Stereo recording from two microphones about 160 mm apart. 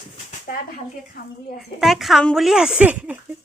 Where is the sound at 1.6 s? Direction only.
Centre (ahead or behind).